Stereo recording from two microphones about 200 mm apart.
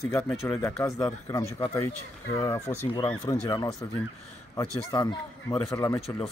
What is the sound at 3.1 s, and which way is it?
Speech, 5° left (ahead or behind).